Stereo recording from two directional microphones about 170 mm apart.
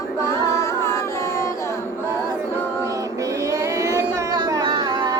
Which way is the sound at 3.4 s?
20° right (ahead or behind).